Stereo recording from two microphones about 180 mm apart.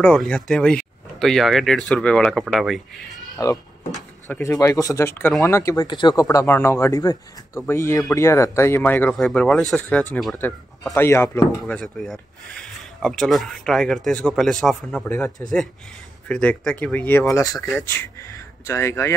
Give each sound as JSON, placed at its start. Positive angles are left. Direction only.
{"t": 0.0, "sound": "speech", "side_deg": 5}
{"t": 3.4, "sound": "speech", "side_deg": 20}
{"t": 11.0, "sound": "speech", "side_deg": 15}
{"t": 16.3, "sound": "speech", "side_deg": 5}